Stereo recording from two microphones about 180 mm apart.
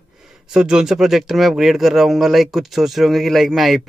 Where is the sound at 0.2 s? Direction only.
5° right (ahead or behind).